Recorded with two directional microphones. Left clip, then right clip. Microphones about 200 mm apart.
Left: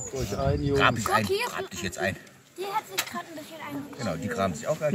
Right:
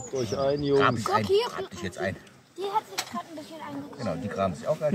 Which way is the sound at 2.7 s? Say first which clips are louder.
Even; 35° right (ahead or behind).